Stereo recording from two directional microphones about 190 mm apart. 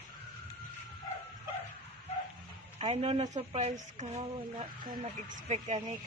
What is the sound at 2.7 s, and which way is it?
Speech, 30° right (ahead or behind).